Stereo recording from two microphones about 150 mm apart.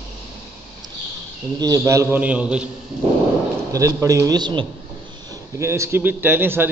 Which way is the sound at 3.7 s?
20° right (ahead or behind).